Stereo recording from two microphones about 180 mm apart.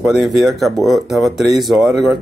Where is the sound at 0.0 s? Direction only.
Centre (ahead or behind).